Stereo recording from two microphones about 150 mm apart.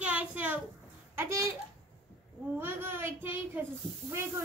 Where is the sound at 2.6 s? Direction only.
15° right (ahead or behind).